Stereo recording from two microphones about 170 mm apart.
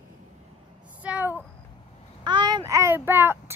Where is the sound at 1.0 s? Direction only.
10° right (ahead or behind).